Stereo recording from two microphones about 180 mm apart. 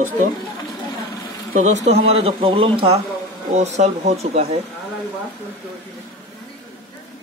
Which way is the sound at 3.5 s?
40° right (ahead or behind).